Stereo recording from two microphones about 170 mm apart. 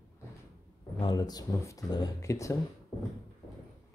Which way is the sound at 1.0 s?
25° left (ahead or behind).